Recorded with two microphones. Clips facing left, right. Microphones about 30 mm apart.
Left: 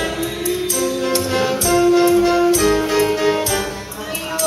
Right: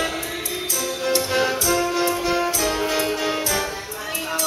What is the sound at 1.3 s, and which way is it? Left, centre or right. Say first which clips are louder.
Music: left 7 dB; centre.